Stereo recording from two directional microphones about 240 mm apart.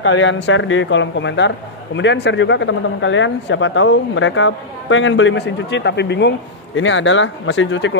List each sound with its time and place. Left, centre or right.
0.0 s speech: left